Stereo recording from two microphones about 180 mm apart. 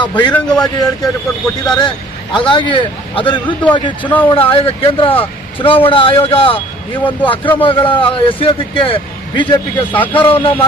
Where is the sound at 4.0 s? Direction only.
10° left (ahead or behind).